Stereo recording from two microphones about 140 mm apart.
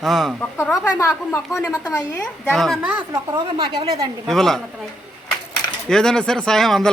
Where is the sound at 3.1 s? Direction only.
30° right (ahead or behind).